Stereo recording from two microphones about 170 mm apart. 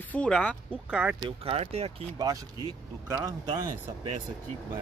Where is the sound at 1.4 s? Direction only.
35° right (ahead or behind).